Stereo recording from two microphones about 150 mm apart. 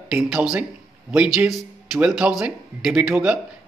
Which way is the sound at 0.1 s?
5° right (ahead or behind).